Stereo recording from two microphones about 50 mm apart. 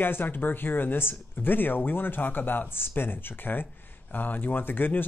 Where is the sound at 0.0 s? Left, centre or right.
Left.